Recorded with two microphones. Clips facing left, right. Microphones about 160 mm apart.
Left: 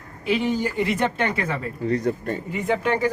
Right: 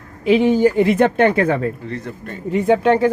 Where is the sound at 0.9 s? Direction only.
55° right (ahead or behind).